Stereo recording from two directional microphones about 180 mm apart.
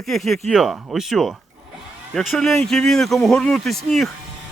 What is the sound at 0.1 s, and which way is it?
Speech, centre (ahead or behind).